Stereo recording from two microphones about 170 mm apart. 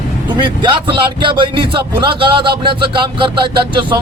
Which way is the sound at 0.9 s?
30° right (ahead or behind).